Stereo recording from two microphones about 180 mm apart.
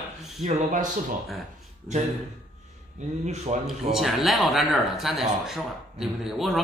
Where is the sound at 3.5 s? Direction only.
30° right (ahead or behind).